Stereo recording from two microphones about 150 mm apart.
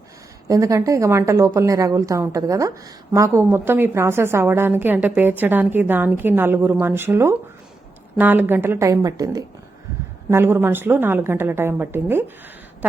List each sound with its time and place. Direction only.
0.4 s a woman's voice: 20° right (ahead or behind)